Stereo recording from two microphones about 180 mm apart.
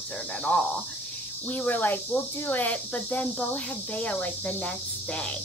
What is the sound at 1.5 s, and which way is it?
Speech, 10° left (ahead or behind).